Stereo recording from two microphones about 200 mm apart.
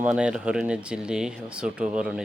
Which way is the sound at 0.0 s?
5° right (ahead or behind).